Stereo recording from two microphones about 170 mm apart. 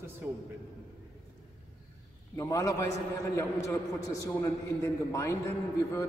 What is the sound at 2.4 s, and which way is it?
Speech, 20° left (ahead or behind).